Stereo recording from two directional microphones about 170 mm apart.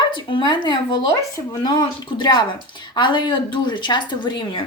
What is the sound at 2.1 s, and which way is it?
Speech, 25° left (ahead or behind).